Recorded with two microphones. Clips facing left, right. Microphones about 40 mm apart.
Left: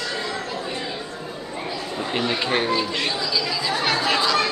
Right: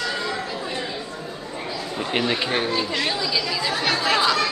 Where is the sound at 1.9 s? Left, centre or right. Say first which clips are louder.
Right 1 dB; centre.